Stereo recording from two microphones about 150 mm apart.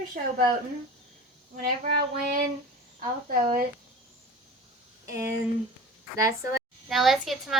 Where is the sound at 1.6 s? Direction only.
70° right (ahead or behind).